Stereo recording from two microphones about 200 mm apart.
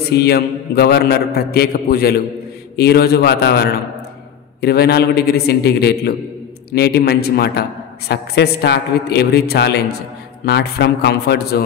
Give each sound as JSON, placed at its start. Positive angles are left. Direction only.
{"t": 0.0, "sound": "a man's voice", "side_deg": 55}